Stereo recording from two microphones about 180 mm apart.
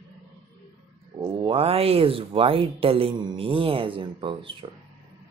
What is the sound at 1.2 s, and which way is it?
Speech, 25° right (ahead or behind).